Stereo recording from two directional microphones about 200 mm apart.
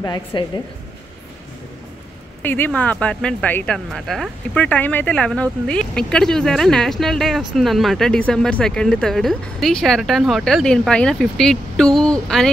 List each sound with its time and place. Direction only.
0.0 s a woman's voice: 20° left (ahead or behind)
2.4 s speech: 10° left (ahead or behind)